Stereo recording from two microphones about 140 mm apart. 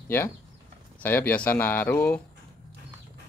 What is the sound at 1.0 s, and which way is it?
Speech, 10° left (ahead or behind).